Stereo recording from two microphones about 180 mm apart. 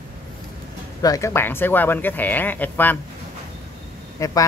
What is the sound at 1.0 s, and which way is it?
Speech, 20° left (ahead or behind).